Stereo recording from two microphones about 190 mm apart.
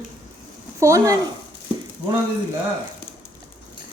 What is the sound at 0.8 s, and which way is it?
Speech, 15° right (ahead or behind).